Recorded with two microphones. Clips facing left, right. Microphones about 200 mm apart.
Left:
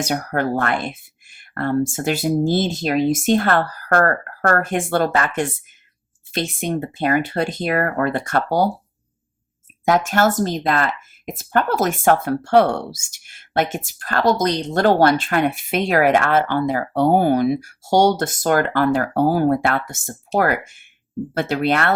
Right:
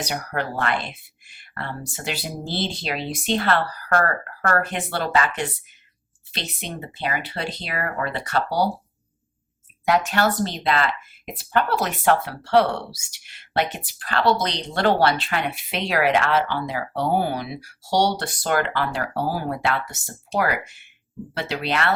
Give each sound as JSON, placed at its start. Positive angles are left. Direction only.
{"t": 0.0, "sound": "speech", "side_deg": 50}
{"t": 9.8, "sound": "speech", "side_deg": 45}